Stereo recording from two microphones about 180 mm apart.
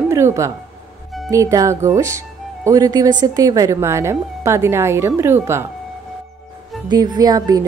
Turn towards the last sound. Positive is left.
turn(degrees=-20)  # may be behind; listen again after turning